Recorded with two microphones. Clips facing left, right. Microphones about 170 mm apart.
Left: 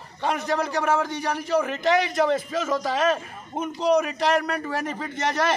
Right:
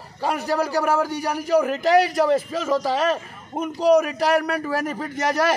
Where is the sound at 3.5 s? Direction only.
5° right (ahead or behind).